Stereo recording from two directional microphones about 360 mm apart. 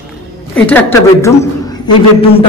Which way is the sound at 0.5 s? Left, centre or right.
Centre.